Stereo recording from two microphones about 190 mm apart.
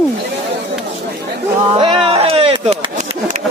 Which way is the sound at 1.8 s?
30° right (ahead or behind).